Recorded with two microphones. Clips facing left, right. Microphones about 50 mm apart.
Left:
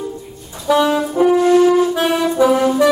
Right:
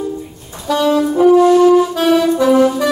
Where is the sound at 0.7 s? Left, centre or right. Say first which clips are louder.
Even; centre.